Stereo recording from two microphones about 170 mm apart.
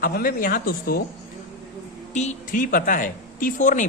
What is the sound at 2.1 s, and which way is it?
A man's voice, 45° left (ahead or behind).